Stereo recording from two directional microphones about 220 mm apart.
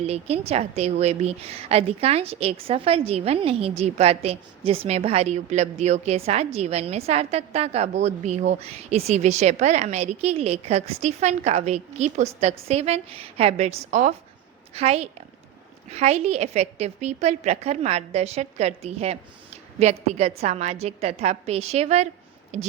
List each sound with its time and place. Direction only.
0.0 s a woman's voice: 30° right (ahead or behind)